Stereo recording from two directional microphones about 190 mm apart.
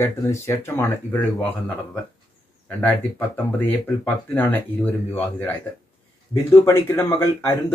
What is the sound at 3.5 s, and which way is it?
Speech, 10° left (ahead or behind).